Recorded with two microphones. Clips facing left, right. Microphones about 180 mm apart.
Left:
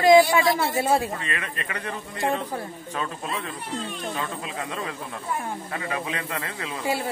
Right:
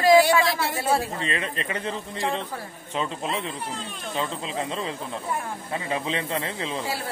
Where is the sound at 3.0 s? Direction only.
25° right (ahead or behind).